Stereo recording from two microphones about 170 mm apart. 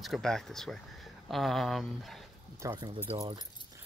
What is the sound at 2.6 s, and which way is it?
Speech, 15° right (ahead or behind).